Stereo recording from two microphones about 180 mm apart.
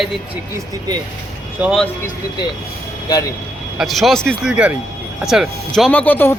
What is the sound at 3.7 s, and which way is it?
Speech, centre (ahead or behind).